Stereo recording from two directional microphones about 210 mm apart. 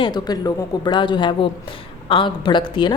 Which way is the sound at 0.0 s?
20° left (ahead or behind).